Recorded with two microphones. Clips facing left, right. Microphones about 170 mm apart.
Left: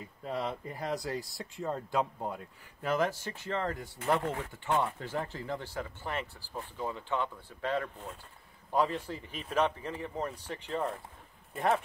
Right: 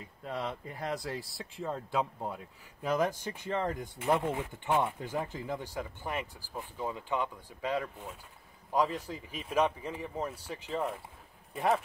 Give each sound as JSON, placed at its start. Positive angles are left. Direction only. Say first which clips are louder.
{"t": 0.0, "sound": "speech", "louder": "left 2 dB", "side_deg": 0}